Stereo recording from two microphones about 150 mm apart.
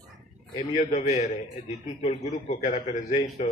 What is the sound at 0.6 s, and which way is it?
A man's voice, 45° left (ahead or behind).